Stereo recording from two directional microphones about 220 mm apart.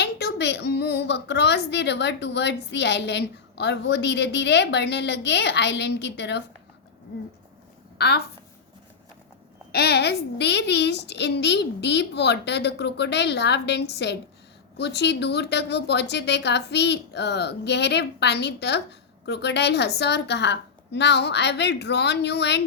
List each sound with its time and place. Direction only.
0.0 s a woman's voice: 50° left (ahead or behind)
7.9 s a woman's voice: 45° left (ahead or behind)
9.7 s a woman's voice: 45° left (ahead or behind)